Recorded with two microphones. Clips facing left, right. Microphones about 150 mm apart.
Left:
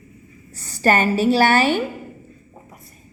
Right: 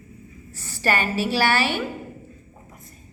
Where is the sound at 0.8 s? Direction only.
45° left (ahead or behind).